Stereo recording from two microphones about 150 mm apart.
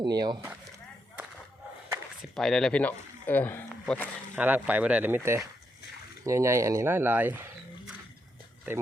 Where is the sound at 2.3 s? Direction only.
5° left (ahead or behind).